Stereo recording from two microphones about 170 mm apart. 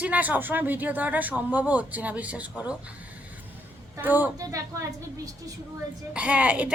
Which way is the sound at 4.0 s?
10° right (ahead or behind).